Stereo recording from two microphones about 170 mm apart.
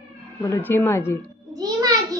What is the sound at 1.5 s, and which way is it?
Speech, 20° right (ahead or behind).